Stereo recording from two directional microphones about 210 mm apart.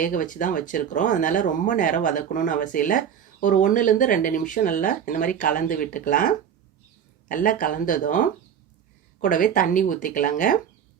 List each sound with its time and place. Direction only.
0.0 s speech: 40° left (ahead or behind)